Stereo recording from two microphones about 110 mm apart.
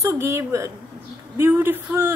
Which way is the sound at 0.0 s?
25° right (ahead or behind).